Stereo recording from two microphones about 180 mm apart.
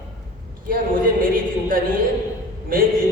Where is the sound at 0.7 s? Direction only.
50° right (ahead or behind).